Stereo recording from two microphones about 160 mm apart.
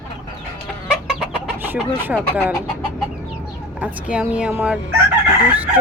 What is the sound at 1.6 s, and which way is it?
Speech, 10° right (ahead or behind).